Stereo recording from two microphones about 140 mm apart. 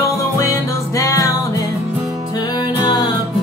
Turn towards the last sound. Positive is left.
turn(degrees=30)  # may be behind; listen again after turning